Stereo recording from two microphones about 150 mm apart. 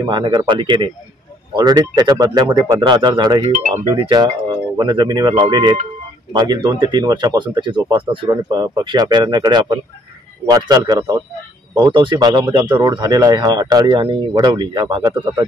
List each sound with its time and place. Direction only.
0.0 s speech: 30° right (ahead or behind)